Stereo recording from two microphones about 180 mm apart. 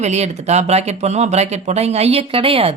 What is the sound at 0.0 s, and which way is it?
A woman's voice, 40° right (ahead or behind).